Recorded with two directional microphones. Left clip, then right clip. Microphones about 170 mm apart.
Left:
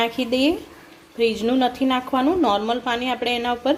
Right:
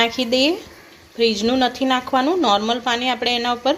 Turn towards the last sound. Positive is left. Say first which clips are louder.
# right 2 dB
turn(degrees=0)  # may be behind; listen again after turning